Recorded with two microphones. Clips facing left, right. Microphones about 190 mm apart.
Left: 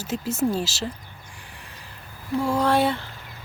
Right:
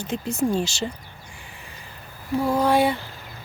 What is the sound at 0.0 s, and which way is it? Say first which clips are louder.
Speech: even; 5° left (ahead or behind).